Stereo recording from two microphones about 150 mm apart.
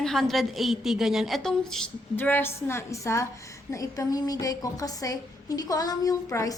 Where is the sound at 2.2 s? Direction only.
15° left (ahead or behind).